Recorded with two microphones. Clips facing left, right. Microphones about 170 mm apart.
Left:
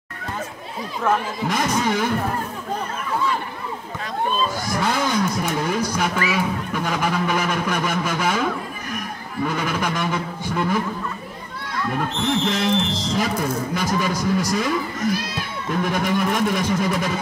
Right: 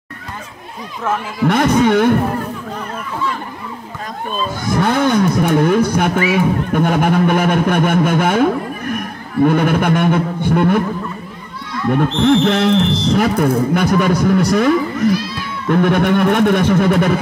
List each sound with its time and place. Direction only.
1.5 s speech: 60° right (ahead or behind)
4.8 s speech: 60° right (ahead or behind)
11.9 s speech: 60° right (ahead or behind)